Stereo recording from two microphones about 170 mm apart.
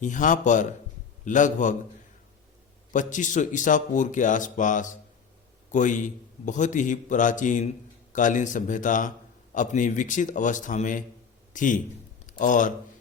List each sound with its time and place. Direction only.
0.0 s speech: 50° left (ahead or behind)
2.9 s speech: 45° left (ahead or behind)